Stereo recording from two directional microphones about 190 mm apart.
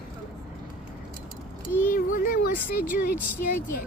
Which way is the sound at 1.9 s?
45° left (ahead or behind).